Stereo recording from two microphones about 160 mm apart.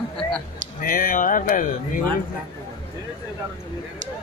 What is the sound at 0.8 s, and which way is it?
Speech, 65° left (ahead or behind).